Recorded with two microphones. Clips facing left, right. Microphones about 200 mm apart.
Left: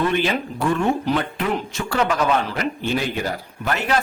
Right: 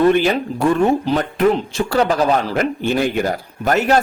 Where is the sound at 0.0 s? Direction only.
45° right (ahead or behind).